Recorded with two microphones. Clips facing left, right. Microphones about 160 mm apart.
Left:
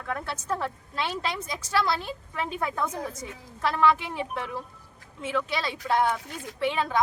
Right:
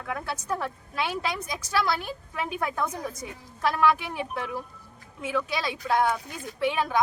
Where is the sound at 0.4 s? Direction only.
5° right (ahead or behind).